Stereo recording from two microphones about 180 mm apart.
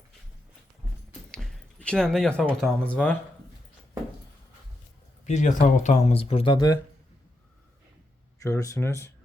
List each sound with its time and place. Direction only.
1.3 s a sound: 5° left (ahead or behind)
2.6 s speech: 5° left (ahead or behind)
5.2 s speech: 40° left (ahead or behind); by 6.7 s 25° left (ahead or behind)
8.4 s speech: 20° left (ahead or behind)